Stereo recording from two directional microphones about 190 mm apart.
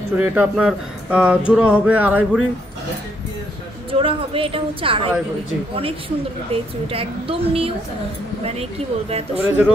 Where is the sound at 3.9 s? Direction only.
30° right (ahead or behind).